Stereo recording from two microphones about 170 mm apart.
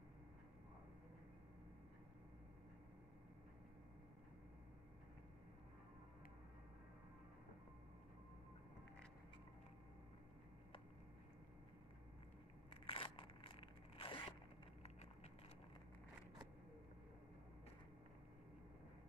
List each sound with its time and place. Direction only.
12.6 s crunch: 35° left (ahead or behind)